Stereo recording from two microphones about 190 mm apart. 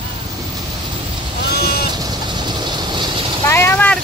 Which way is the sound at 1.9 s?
20° right (ahead or behind).